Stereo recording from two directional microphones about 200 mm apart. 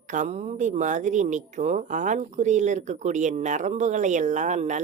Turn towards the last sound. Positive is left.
turn(degrees=-35)  # may be behind; listen again after turning